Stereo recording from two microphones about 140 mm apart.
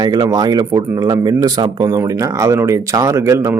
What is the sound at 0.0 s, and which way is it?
A man's voice, 30° right (ahead or behind).